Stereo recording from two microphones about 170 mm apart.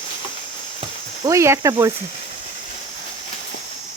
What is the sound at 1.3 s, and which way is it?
Speech, 15° right (ahead or behind).